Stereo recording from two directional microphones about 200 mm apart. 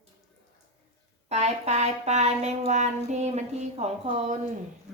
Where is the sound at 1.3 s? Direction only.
35° right (ahead or behind).